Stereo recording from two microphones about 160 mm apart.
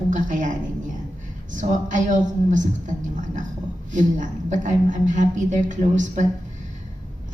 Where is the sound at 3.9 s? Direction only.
50° right (ahead or behind).